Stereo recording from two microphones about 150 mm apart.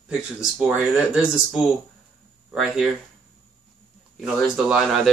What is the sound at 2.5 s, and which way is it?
Speech, 5° right (ahead or behind).